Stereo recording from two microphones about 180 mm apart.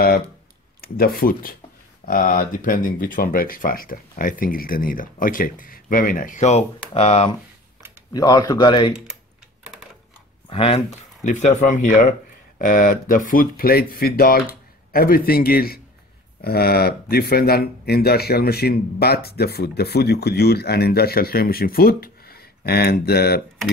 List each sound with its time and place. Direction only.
0.7 s speech: 55° left (ahead or behind); by 7.3 s 35° left (ahead or behind)
8.1 s speech: 20° left (ahead or behind)
10.5 s speech: 30° left (ahead or behind)
11.2 s speech: 45° left (ahead or behind); by 23.4 s 60° left (ahead or behind)